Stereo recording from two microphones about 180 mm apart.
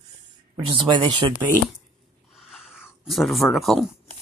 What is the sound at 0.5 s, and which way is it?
Speech, 25° right (ahead or behind).